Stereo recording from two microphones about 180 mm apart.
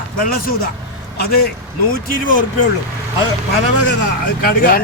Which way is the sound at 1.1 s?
60° left (ahead or behind).